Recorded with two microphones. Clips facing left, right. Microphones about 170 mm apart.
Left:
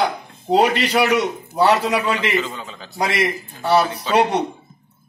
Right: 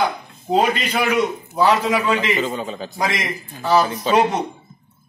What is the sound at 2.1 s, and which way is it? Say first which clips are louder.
Speech: right 1 dB; 45° right (ahead or behind).